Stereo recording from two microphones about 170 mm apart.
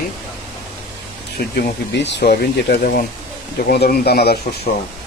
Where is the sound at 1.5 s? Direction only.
75° left (ahead or behind).